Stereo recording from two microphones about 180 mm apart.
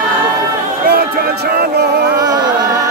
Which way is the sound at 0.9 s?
60° right (ahead or behind).